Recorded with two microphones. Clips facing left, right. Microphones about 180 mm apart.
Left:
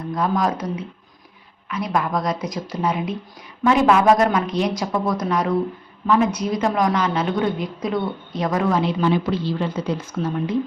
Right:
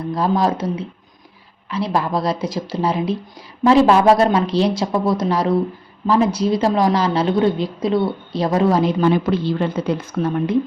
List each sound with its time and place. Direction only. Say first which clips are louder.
0.1 s a woman's voice: right 3 dB; 30° right (ahead or behind)
8.8 s a woman's voice: right 4 dB; 45° right (ahead or behind)